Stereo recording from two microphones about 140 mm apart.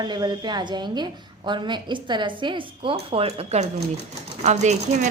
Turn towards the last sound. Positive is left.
turn(degrees=-55)  # may be behind; listen again after turning